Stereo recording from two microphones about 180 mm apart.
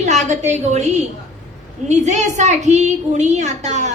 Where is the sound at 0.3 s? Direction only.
40° right (ahead or behind).